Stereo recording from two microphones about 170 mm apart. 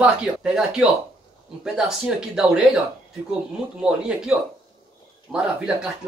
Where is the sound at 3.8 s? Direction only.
5° right (ahead or behind).